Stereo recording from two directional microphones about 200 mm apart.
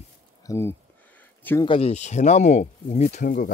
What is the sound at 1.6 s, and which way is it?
Speech, 30° left (ahead or behind).